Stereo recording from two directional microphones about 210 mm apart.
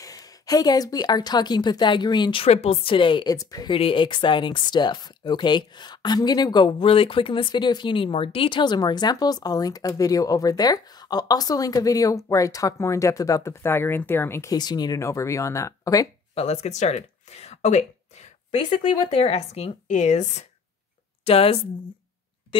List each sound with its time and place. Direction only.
0.0 s a woman's voice: 15° left (ahead or behind)
16.3 s a woman's voice: 30° left (ahead or behind)
22.5 s a sound: 25° left (ahead or behind)